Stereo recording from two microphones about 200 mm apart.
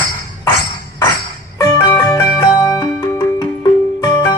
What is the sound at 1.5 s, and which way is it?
Music, 15° left (ahead or behind).